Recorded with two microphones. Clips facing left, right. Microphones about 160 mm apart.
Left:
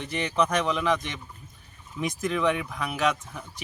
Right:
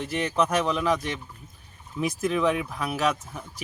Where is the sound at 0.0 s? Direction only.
Centre (ahead or behind).